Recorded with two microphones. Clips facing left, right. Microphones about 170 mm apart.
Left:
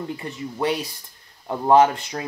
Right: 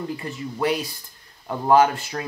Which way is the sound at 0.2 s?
25° left (ahead or behind).